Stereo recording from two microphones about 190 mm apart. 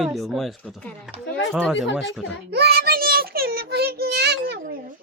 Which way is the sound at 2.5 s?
55° right (ahead or behind).